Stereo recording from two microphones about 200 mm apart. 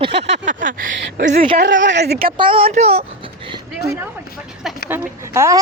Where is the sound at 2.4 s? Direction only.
25° right (ahead or behind).